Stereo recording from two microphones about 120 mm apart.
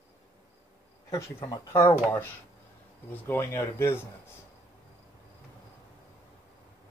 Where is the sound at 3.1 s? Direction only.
20° left (ahead or behind).